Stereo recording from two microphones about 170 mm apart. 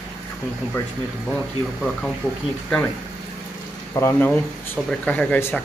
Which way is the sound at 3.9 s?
10° left (ahead or behind).